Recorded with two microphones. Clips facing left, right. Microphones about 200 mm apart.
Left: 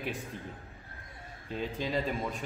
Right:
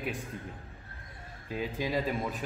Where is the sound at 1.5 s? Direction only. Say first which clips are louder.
Right 1 dB; 5° right (ahead or behind).